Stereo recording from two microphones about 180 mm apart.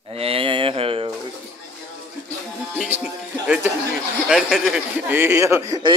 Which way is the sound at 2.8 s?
10° right (ahead or behind).